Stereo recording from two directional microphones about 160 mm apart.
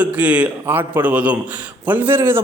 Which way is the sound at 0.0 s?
10° right (ahead or behind).